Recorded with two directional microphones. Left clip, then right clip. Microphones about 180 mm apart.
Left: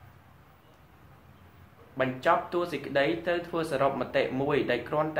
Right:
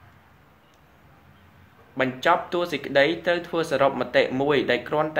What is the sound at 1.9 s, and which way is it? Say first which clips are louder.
Speech: right 4 dB; 45° right (ahead or behind).